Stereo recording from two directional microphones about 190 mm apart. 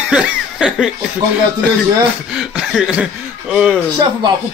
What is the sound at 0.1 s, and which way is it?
Laughter, 5° right (ahead or behind).